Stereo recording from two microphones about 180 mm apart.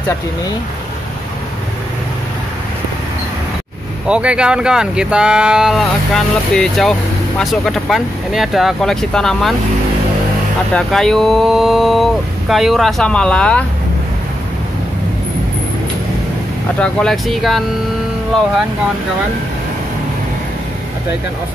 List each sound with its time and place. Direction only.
4.1 s speech: 5° right (ahead or behind)
10.7 s speech: 5° left (ahead or behind)
16.8 s speech: centre (ahead or behind)